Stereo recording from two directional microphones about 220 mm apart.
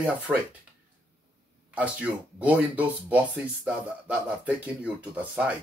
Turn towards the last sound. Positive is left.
turn(degrees=-5)  # may be behind; listen again after turning